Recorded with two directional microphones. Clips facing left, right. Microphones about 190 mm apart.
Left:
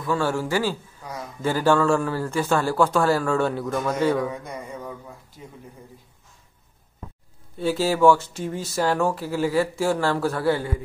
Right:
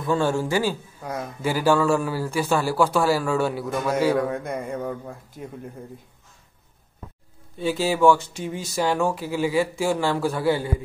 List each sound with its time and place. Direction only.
0.0 s a man's voice: 20° right (ahead or behind)
4.3 s speech: 55° right (ahead or behind)
7.6 s speech: centre (ahead or behind)